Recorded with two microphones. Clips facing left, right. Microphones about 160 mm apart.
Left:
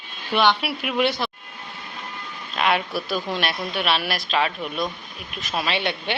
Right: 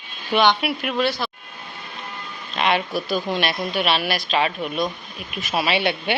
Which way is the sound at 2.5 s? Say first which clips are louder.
Right 1 dB; centre (ahead or behind).